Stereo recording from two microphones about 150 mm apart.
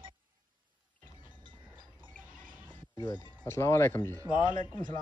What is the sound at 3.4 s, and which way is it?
Speech, 20° left (ahead or behind).